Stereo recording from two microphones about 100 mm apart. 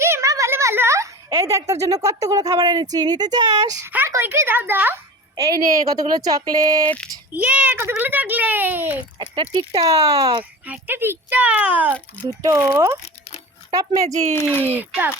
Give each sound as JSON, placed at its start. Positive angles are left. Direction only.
{"t": 0.0, "sound": "speech", "side_deg": -30}
{"t": 3.8, "sound": "speech", "side_deg": -25}
{"t": 5.4, "sound": "speech", "side_deg": -40}
{"t": 7.3, "sound": "speech", "side_deg": -15}
{"t": 9.1, "sound": "speech", "side_deg": -55}
{"t": 10.7, "sound": "speech", "side_deg": -20}
{"t": 12.4, "sound": "speech", "side_deg": -30}
{"t": 14.8, "sound": "speech", "side_deg": -20}